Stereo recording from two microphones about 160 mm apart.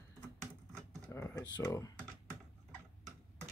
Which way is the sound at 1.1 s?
20° left (ahead or behind).